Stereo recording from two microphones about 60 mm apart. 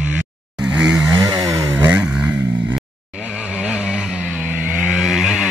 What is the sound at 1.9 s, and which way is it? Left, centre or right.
Vehicle, right.